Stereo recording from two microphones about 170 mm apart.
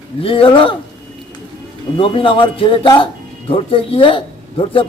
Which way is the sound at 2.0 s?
30° left (ahead or behind).